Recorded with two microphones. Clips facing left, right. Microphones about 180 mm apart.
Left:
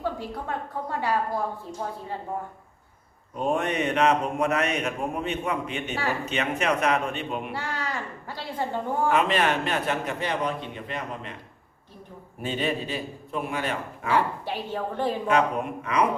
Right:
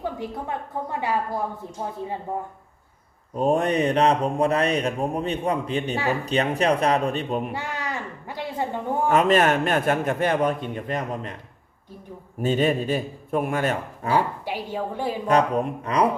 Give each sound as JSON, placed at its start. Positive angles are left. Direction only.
{"t": 0.0, "sound": "a woman's voice", "side_deg": -15}
{"t": 3.3, "sound": "speech", "side_deg": -35}
{"t": 7.5, "sound": "speech", "side_deg": -20}
{"t": 9.0, "sound": "a man's voice", "side_deg": -45}
{"t": 12.4, "sound": "a man's voice", "side_deg": -45}
{"t": 14.2, "sound": "a woman's voice", "side_deg": -10}
{"t": 15.3, "sound": "speech", "side_deg": -35}